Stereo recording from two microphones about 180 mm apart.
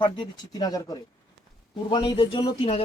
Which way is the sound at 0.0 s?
25° left (ahead or behind).